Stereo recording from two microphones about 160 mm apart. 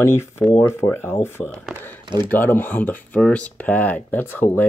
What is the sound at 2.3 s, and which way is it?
Speech, 10° left (ahead or behind).